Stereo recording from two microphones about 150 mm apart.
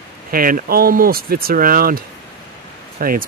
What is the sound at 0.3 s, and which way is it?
Speech, 70° right (ahead or behind).